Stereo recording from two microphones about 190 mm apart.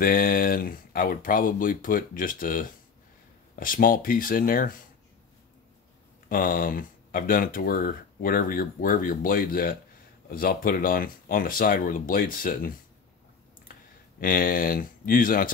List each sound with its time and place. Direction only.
0.0 s speech: 50° left (ahead or behind)
6.2 s speech: 45° left (ahead or behind)
14.2 s speech: 50° left (ahead or behind)